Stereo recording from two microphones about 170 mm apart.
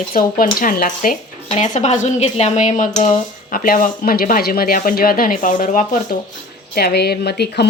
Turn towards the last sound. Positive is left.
turn(degrees=70)  # may be behind; listen again after turning